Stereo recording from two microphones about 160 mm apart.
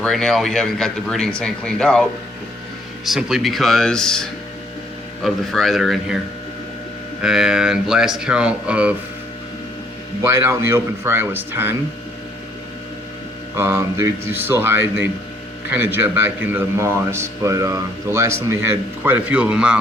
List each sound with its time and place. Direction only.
0.0 s speech: 5° left (ahead or behind)
7.2 s speech: 5° right (ahead or behind)
10.2 s a man's voice: 15° right (ahead or behind)
13.6 s a man's voice: 15° right (ahead or behind)